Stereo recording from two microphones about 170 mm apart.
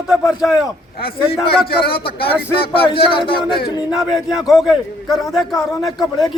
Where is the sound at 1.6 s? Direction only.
65° left (ahead or behind).